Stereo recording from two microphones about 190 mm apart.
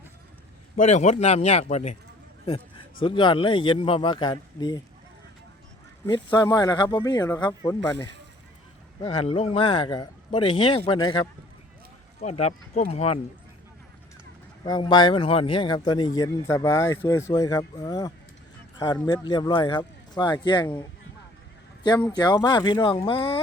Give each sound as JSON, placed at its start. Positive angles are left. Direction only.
{"t": 0.8, "sound": "speech", "side_deg": 40}
{"t": 3.0, "sound": "a man's voice", "side_deg": 25}
{"t": 6.1, "sound": "a man's voice", "side_deg": 20}
{"t": 12.2, "sound": "speech", "side_deg": 35}
{"t": 14.6, "sound": "a man's voice", "side_deg": 25}
{"t": 22.1, "sound": "a man's voice", "side_deg": 20}